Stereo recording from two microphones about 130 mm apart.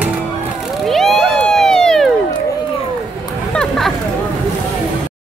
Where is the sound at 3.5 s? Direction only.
5° left (ahead or behind).